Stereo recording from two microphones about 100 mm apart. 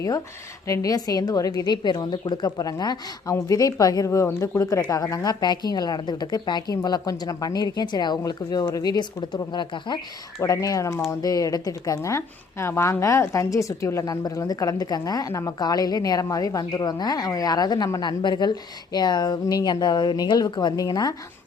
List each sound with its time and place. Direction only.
0.7 s a woman's voice: 35° left (ahead or behind)
5.1 s a woman's voice: 40° left (ahead or behind)
10.4 s a woman's voice: 35° left (ahead or behind)